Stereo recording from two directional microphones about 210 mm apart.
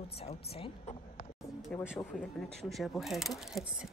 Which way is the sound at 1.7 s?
5° left (ahead or behind).